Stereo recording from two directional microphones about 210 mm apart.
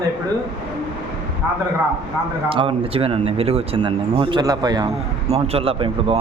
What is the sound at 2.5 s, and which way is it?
Speech, 25° right (ahead or behind).